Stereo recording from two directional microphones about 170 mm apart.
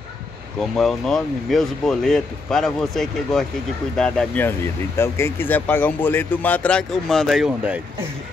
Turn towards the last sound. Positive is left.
turn(degrees=-5)  # may be behind; listen again after turning